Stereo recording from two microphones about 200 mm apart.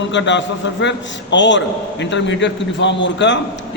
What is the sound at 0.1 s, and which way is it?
A man's voice, 65° left (ahead or behind).